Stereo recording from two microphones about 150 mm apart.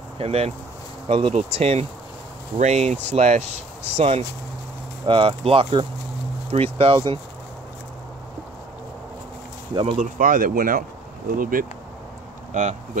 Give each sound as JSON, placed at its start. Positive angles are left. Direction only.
{"t": 0.2, "sound": "speech", "side_deg": -40}
{"t": 5.0, "sound": "speech", "side_deg": -35}
{"t": 9.9, "sound": "speech", "side_deg": -60}
{"t": 12.5, "sound": "speech", "side_deg": -55}